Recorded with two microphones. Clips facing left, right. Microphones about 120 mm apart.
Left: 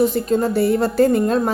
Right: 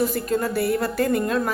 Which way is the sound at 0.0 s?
25° left (ahead or behind).